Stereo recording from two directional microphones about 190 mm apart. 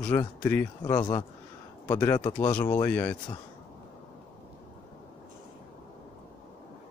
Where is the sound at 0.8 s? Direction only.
20° left (ahead or behind).